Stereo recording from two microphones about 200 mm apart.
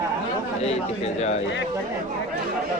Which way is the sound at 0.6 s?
30° left (ahead or behind).